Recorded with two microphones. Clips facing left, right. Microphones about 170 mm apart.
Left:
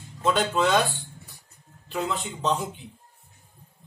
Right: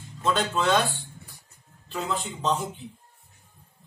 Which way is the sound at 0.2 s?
5° left (ahead or behind).